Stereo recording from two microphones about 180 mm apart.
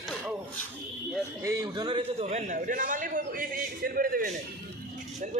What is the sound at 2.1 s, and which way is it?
A man's voice, 40° right (ahead or behind).